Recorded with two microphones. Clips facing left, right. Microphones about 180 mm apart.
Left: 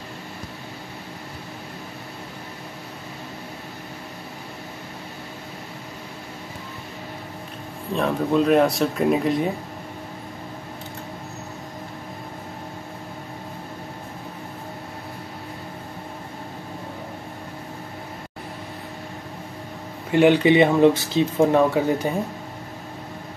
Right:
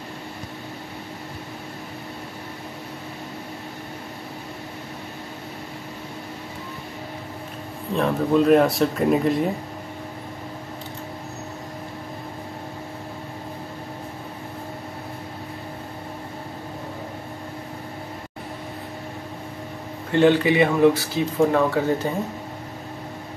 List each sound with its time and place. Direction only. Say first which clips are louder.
7.9 s speech: right 1 dB; centre (ahead or behind)
20.1 s speech: left 2 dB; 15° left (ahead or behind)